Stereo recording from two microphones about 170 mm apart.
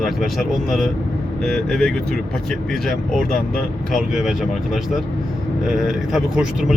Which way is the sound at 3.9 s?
Centre (ahead or behind).